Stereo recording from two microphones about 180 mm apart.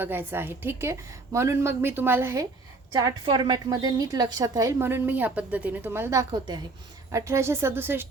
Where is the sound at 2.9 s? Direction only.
25° right (ahead or behind).